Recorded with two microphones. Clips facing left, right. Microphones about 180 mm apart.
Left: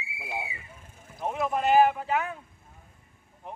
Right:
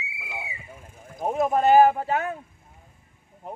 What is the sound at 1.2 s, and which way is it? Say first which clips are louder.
Speech: right 6 dB; 40° right (ahead or behind).